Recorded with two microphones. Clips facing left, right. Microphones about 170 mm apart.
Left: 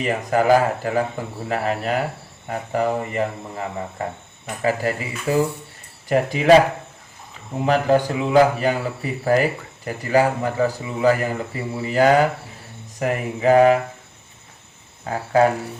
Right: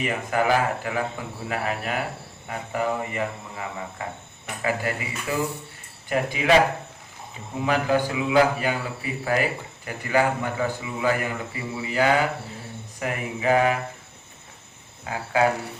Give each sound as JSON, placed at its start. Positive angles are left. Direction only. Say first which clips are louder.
{"t": 0.0, "sound": "speech", "louder": "left 4 dB", "side_deg": 40}
{"t": 7.6, "sound": "speech", "louder": "left 5 dB", "side_deg": 45}
{"t": 15.0, "sound": "speech", "louder": "left 5 dB", "side_deg": 40}